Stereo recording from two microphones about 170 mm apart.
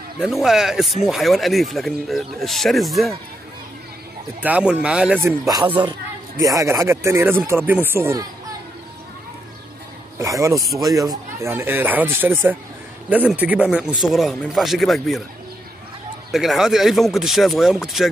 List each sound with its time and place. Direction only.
0.2 s speech: centre (ahead or behind)
4.4 s speech: 10° right (ahead or behind)
6.4 s speech: 20° right (ahead or behind)
10.1 s speech: 20° right (ahead or behind); by 15.2 s centre (ahead or behind)
16.3 s speech: centre (ahead or behind)